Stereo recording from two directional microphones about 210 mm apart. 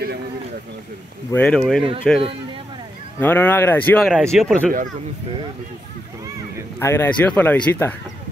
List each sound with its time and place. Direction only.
1.3 s speech: 5° left (ahead or behind)
2.1 s speech: 25° right (ahead or behind)
3.2 s speech: 10° left (ahead or behind)
6.8 s speech: 10° left (ahead or behind)